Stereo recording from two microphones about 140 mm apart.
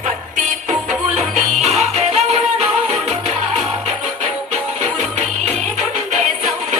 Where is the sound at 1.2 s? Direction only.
55° right (ahead or behind).